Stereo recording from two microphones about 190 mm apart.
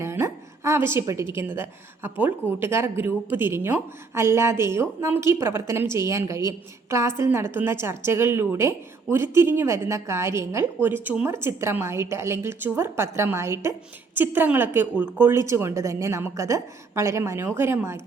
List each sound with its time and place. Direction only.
0.0 s a woman's voice: 15° right (ahead or behind)